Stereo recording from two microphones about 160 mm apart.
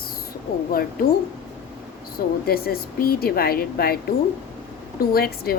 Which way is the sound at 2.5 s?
70° left (ahead or behind).